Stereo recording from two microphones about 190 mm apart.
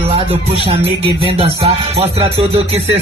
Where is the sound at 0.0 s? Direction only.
30° right (ahead or behind).